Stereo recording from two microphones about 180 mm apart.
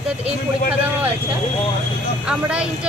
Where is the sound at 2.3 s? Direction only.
5° right (ahead or behind).